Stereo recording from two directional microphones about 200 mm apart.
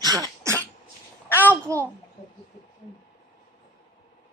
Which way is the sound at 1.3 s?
10° left (ahead or behind).